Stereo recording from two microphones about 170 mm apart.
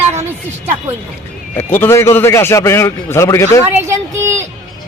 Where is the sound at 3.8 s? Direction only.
15° right (ahead or behind).